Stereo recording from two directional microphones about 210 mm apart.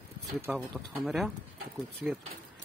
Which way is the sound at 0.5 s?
Centre (ahead or behind).